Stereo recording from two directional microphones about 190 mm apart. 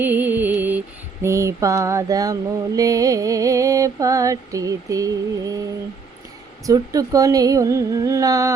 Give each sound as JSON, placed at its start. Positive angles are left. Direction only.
{"t": 0.0, "sound": "music", "side_deg": -10}
{"t": 1.2, "sound": "mantra", "side_deg": -15}
{"t": 6.7, "sound": "mantra", "side_deg": -20}